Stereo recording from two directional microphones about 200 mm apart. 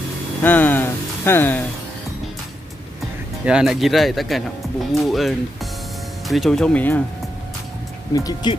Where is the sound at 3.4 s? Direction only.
5° right (ahead or behind).